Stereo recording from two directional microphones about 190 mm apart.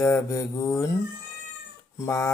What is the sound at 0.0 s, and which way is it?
Mantra, 15° left (ahead or behind).